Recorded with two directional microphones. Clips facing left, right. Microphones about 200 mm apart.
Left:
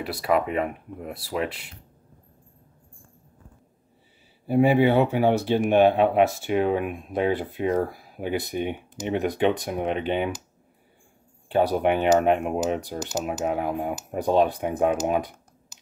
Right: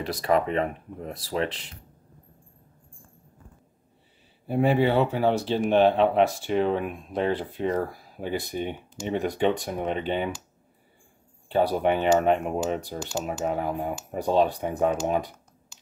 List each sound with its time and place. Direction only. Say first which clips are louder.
0.2 s speech: even; 10° left (ahead or behind)
4.5 s speech: left 3 dB; 5° left (ahead or behind)
4.8 s speech: left 2 dB; 15° left (ahead or behind)
9.4 s speech: left 2 dB; 5° left (ahead or behind)
11.7 s speech: left 2 dB; 5° left (ahead or behind)